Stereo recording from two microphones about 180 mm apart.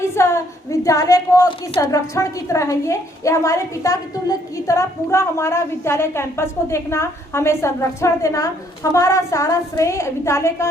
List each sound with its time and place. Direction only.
0.0 s a woman's voice: 15° left (ahead or behind)